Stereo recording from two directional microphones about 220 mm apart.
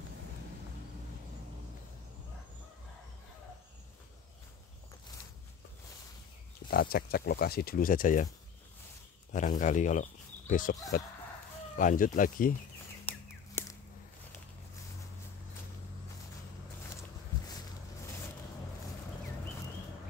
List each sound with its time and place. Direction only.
6.7 s speech: 45° left (ahead or behind)
9.3 s speech: 35° left (ahead or behind)